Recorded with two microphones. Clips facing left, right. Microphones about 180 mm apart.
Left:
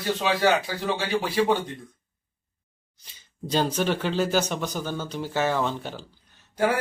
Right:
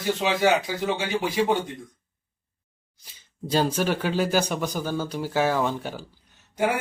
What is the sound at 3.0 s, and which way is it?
A man's voice, 10° right (ahead or behind).